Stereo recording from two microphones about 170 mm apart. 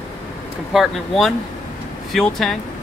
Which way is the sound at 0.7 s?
Centre (ahead or behind).